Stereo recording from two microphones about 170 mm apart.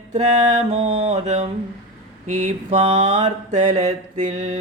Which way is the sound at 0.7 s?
35° right (ahead or behind).